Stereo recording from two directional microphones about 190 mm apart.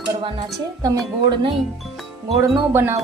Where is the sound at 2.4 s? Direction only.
10° right (ahead or behind).